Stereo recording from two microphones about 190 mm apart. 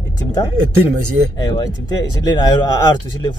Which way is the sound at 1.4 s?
20° left (ahead or behind).